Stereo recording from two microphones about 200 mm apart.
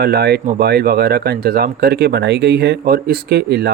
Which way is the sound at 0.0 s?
55° right (ahead or behind).